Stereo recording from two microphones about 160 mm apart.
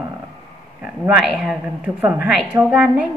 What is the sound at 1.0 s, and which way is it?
A woman's voice, centre (ahead or behind).